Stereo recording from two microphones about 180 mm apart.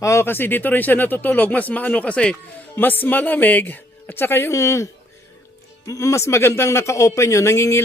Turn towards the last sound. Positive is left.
turn(degrees=15)  # may be behind; listen again after turning